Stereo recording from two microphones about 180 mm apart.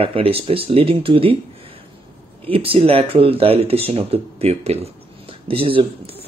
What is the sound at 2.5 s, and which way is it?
Speech, 30° right (ahead or behind).